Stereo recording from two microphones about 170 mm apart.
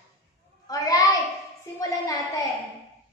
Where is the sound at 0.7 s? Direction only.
20° left (ahead or behind).